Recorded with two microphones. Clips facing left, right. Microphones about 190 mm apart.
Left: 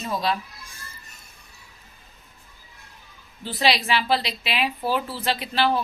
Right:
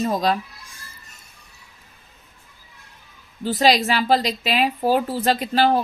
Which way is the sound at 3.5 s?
45° right (ahead or behind).